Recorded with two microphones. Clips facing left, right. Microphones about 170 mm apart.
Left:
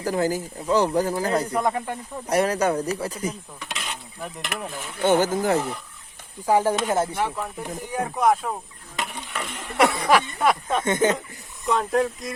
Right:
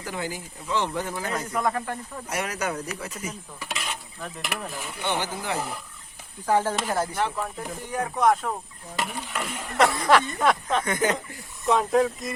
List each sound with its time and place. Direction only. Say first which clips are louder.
0.0 s speech: left 9 dB; 40° left (ahead or behind)
1.6 s speech: left 2 dB; 20° left (ahead or behind)
2.2 s speech: left 9 dB; 35° left (ahead or behind)
3.6 s stir: right 3 dB; centre (ahead or behind)
4.7 s speech: left 1 dB; 5° right (ahead or behind)
5.0 s speech: left 10 dB; 45° left (ahead or behind)
5.5 s speech: left 5 dB; 5° right (ahead or behind)
6.4 s speech: left 3 dB; 10° left (ahead or behind)
6.8 s speech: left 4 dB; 25° left (ahead or behind)
7.2 s speech: left 1 dB; 5° left (ahead or behind)
10.1 s speech: left 1 dB; 10° left (ahead or behind)
10.8 s speech: left 7 dB; 25° left (ahead or behind)
11.7 s speech: right 1 dB; centre (ahead or behind)